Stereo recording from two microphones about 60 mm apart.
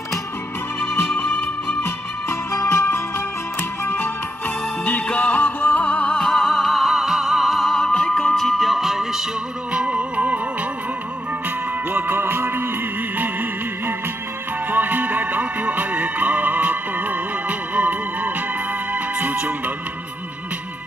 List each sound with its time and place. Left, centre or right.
2.5 s music: left
5.0 s music: left
5.9 s music: centre
9.7 s music: centre
11.9 s music: right